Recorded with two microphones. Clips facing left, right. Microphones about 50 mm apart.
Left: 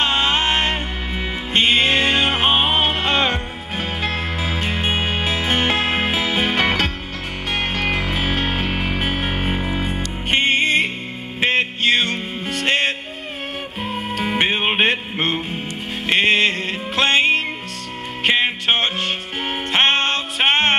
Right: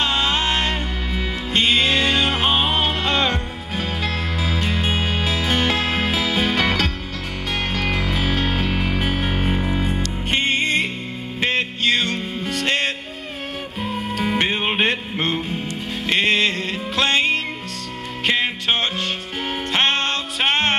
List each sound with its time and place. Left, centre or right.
0.0 s music: left